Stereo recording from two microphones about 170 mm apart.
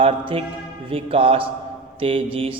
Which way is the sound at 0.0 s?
35° right (ahead or behind).